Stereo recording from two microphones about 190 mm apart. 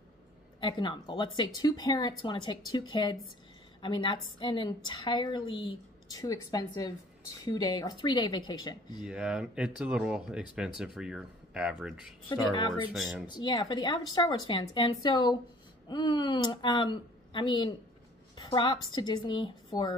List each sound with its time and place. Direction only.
0.6 s speech: 25° left (ahead or behind)
9.0 s speech: 5° right (ahead or behind)
12.5 s speech: 25° left (ahead or behind)
12.9 s speech: centre (ahead or behind)
13.3 s speech: 25° left (ahead or behind)